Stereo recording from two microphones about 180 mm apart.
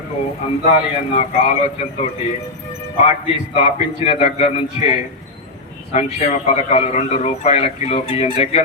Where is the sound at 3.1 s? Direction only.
35° left (ahead or behind).